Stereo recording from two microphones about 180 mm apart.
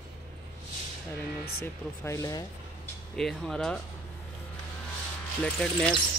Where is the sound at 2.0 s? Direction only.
15° left (ahead or behind).